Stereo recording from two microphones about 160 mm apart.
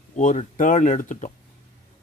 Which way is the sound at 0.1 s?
50° left (ahead or behind).